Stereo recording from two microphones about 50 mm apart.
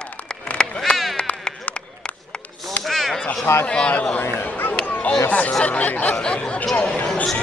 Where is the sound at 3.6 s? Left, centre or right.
Centre.